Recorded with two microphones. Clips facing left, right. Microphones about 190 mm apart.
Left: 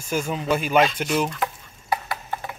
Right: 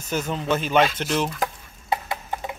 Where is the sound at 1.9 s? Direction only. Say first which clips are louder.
Even; 20° right (ahead or behind).